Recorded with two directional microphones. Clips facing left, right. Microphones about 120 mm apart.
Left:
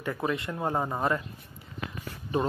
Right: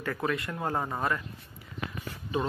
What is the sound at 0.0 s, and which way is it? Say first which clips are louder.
Speech: left 1 dB; 20° left (ahead or behind).